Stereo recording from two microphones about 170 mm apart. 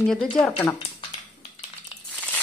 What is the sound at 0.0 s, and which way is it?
Speech, 5° left (ahead or behind).